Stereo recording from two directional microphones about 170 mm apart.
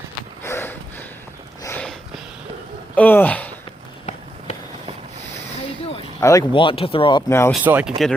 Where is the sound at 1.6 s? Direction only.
10° left (ahead or behind).